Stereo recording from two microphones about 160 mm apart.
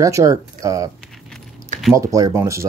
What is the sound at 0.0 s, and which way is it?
Speech, 20° right (ahead or behind).